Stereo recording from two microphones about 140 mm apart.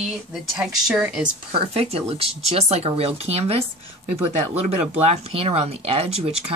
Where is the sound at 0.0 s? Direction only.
5° right (ahead or behind).